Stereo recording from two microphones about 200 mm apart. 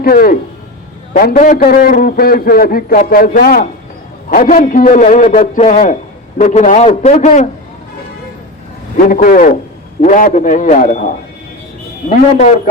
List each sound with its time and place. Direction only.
0.0 s a man's voice: 45° left (ahead or behind)
9.0 s a man's voice: 45° left (ahead or behind)